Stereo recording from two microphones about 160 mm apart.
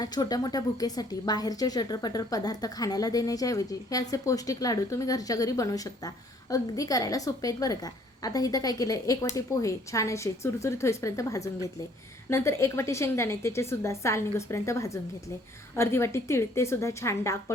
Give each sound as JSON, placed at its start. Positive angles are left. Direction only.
{"t": 0.0, "sound": "a woman's voice", "side_deg": 25}